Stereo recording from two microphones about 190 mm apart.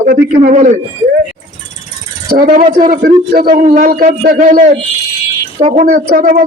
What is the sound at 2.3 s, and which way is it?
A woman's voice, 45° right (ahead or behind).